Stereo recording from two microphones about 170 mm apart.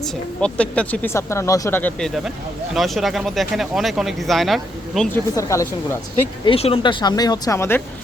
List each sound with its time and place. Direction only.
0.0 s speech: 5° left (ahead or behind)
5.1 s speech: 15° left (ahead or behind)
6.4 s speech: 35° left (ahead or behind); by 7.8 s 15° left (ahead or behind)